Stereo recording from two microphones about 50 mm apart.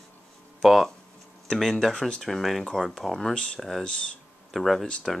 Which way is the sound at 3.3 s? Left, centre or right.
Centre.